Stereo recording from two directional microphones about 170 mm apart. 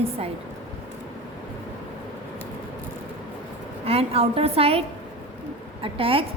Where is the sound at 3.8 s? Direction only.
35° right (ahead or behind).